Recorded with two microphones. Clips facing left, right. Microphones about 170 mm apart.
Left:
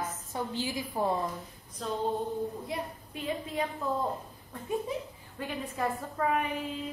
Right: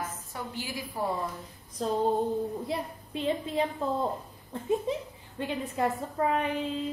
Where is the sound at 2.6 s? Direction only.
30° right (ahead or behind).